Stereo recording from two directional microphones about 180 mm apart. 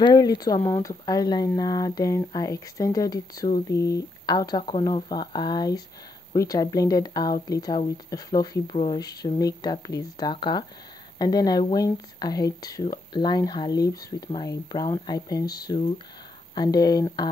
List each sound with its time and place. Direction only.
0.0 s speech: 20° left (ahead or behind)